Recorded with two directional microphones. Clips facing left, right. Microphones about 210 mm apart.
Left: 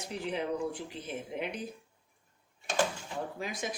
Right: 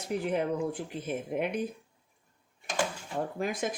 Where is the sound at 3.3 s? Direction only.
50° right (ahead or behind).